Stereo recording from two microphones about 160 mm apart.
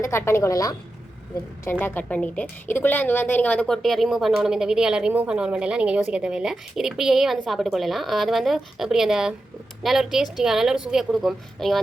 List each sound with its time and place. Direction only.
0.0 s a woman's voice: 15° left (ahead or behind)
1.8 s a woman's voice: 10° left (ahead or behind)